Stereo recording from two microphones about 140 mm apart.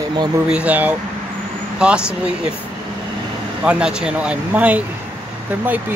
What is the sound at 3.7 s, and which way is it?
Speech, 5° right (ahead or behind).